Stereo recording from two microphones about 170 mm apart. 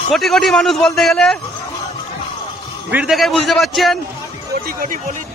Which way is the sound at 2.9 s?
5° right (ahead or behind).